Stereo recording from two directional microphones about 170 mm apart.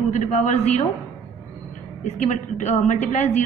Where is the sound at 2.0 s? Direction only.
40° left (ahead or behind).